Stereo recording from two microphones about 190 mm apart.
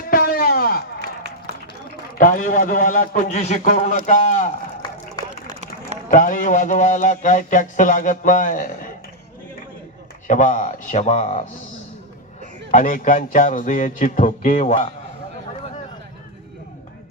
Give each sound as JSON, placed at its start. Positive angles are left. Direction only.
{"t": 0.1, "sound": "chop", "side_deg": 50}
{"t": 2.1, "sound": "speech", "side_deg": 45}
{"t": 4.8, "sound": "a sound", "side_deg": 20}
{"t": 6.1, "sound": "speech", "side_deg": 45}
{"t": 10.2, "sound": "speech", "side_deg": 40}
{"t": 12.7, "sound": "speech", "side_deg": 45}